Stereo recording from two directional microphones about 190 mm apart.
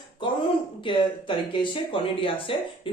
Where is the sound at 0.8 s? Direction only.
25° left (ahead or behind).